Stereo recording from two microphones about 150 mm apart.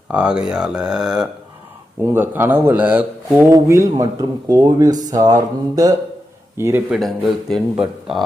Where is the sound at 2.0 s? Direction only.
15° right (ahead or behind).